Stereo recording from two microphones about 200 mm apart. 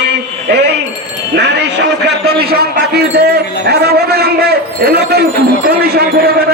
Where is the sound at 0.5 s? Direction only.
55° right (ahead or behind).